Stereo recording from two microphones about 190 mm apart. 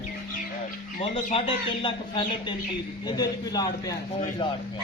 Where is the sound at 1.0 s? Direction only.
30° left (ahead or behind).